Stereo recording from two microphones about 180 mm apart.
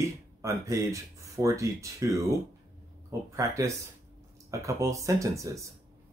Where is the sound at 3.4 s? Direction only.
15° right (ahead or behind).